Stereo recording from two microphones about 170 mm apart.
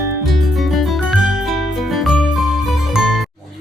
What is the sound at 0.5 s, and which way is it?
Music, centre (ahead or behind).